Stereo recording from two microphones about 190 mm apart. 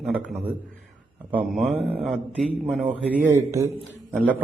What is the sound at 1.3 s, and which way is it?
Speech, 5° right (ahead or behind).